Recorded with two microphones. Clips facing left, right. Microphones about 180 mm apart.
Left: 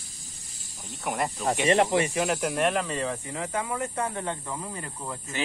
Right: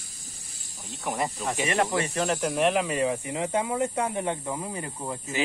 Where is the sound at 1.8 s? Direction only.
15° left (ahead or behind).